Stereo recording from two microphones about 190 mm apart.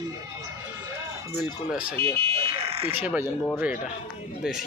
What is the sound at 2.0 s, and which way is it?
Car alarm, 30° right (ahead or behind).